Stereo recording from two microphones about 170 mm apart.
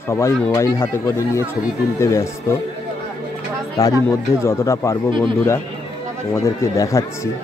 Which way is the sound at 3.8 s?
20° left (ahead or behind).